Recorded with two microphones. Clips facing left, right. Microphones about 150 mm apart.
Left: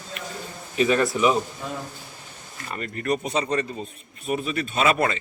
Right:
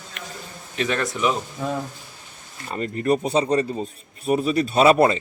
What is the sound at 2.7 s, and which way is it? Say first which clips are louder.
A man's voice: right 5 dB; 30° right (ahead or behind).